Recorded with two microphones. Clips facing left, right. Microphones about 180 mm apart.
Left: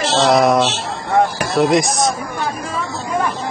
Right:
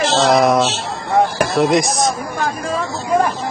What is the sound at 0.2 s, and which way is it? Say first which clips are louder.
Speech: left 1 dB; centre (ahead or behind).